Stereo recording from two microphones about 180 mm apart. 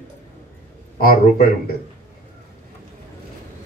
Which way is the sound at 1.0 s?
55° left (ahead or behind).